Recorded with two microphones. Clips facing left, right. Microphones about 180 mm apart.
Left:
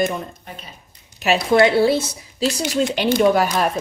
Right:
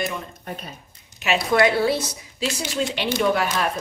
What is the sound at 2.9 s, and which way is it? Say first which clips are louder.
Speech: left 6 dB; 45° left (ahead or behind).